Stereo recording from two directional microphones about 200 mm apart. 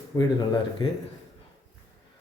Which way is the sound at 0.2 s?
20° left (ahead or behind).